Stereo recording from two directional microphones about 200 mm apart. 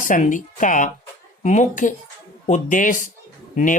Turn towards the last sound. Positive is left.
turn(degrees=40)  # may be behind; listen again after turning